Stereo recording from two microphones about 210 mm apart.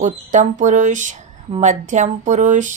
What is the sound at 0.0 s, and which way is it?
A woman's voice, 35° right (ahead or behind).